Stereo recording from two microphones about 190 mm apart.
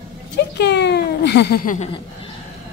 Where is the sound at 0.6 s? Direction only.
65° left (ahead or behind); by 1.9 s 45° left (ahead or behind).